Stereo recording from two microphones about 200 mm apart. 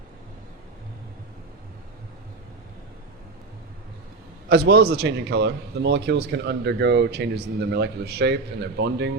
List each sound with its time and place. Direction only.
4.4 s a man's voice: 55° right (ahead or behind)